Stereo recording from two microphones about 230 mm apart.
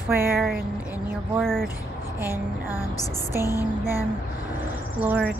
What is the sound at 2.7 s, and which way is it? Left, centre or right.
Music, centre.